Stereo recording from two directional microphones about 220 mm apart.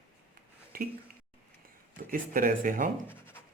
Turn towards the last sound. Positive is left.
turn(degrees=10)  # may be behind; listen again after turning